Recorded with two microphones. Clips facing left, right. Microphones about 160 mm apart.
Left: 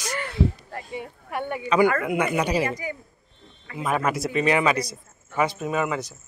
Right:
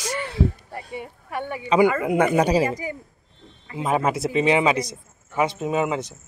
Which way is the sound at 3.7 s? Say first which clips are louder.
Right 2 dB; 25° right (ahead or behind).